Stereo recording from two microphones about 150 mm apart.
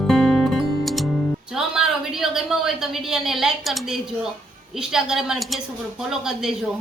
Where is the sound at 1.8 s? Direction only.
Centre (ahead or behind).